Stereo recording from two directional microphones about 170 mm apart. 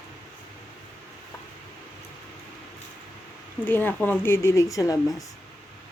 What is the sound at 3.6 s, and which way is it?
Speech, 10° left (ahead or behind).